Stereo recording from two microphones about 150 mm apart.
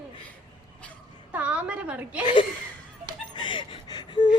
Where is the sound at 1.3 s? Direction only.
10° right (ahead or behind).